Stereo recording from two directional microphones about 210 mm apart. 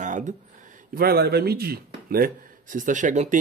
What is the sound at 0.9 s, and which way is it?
Speech, 50° right (ahead or behind).